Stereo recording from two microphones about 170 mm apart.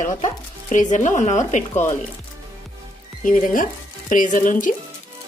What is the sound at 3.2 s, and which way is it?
Speech, 50° left (ahead or behind).